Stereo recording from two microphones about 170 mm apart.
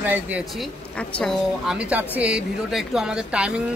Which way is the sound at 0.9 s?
5° left (ahead or behind).